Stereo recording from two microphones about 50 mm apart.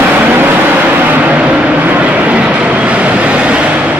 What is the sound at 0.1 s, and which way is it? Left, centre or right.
Vehicle, right.